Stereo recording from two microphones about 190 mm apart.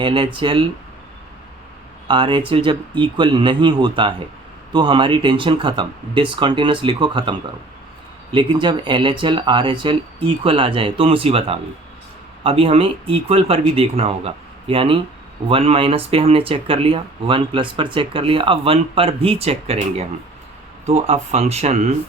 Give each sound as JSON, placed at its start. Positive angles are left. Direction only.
{"t": 0.0, "sound": "speech", "side_deg": -25}
{"t": 2.0, "sound": "speech", "side_deg": -25}